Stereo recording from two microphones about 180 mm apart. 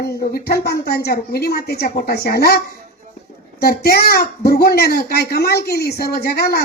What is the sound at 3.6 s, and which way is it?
A woman's voice, 60° left (ahead or behind).